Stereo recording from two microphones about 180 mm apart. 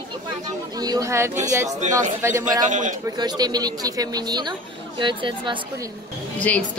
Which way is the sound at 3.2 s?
25° right (ahead or behind).